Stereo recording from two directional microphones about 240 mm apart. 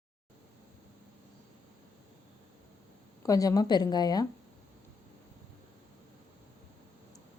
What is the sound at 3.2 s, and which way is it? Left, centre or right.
A woman's voice, centre.